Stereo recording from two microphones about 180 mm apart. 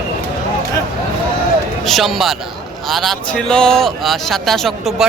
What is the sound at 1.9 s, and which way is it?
A man's voice, centre (ahead or behind).